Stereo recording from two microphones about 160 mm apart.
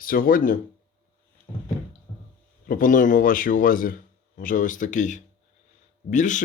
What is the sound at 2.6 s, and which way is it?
Speech, 55° left (ahead or behind).